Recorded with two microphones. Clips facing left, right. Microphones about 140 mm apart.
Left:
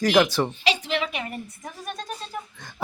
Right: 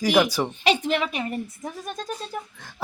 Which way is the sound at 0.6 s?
50° right (ahead or behind).